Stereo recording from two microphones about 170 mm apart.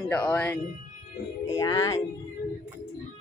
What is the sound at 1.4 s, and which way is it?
Speech, 20° left (ahead or behind).